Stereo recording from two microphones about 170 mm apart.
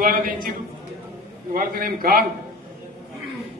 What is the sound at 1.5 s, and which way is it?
Speech, 55° right (ahead or behind).